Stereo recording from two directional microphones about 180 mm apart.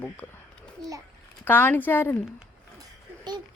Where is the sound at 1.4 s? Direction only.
10° left (ahead or behind).